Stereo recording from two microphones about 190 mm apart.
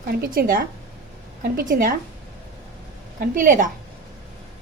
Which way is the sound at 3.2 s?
45° right (ahead or behind).